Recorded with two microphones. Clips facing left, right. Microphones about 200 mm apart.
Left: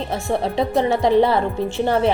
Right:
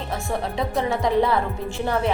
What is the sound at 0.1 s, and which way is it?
A woman's voice, 30° left (ahead or behind).